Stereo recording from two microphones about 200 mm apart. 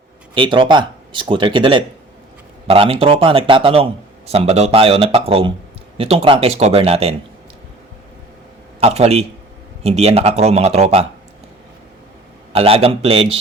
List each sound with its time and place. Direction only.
0.3 s speech: 25° right (ahead or behind)
8.8 s speech: 30° right (ahead or behind)
12.5 s speech: 30° right (ahead or behind)